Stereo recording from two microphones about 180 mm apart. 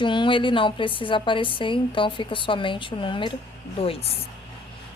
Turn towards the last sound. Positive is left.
turn(degrees=35)  # may be behind; listen again after turning